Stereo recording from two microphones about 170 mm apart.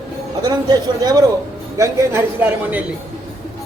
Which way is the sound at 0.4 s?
25° right (ahead or behind).